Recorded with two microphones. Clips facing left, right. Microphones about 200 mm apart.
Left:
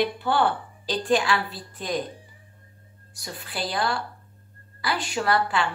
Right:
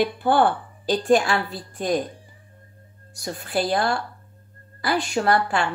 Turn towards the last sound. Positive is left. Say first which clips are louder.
# right 3 dB
turn(degrees=-45)  # may be behind; listen again after turning